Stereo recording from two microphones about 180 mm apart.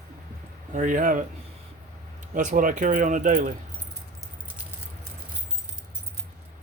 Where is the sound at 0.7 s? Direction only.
45° right (ahead or behind).